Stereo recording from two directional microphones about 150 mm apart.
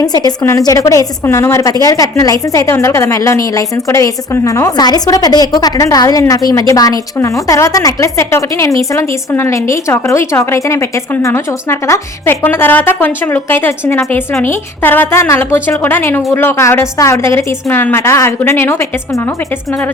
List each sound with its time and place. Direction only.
0.3 s a woman's voice: 25° left (ahead or behind)